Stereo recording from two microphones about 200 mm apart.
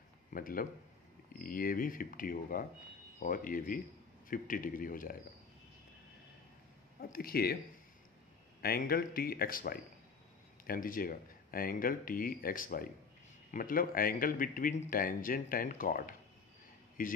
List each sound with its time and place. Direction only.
0.3 s a man's voice: 45° left (ahead or behind)
7.0 s a man's voice: 50° left (ahead or behind)
8.6 s a man's voice: 50° left (ahead or behind)